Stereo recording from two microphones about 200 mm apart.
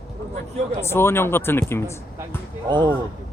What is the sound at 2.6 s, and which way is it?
Speech, 25° right (ahead or behind).